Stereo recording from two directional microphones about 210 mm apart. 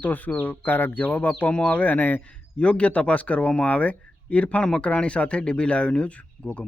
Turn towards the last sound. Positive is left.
turn(degrees=5)  # may be behind; listen again after turning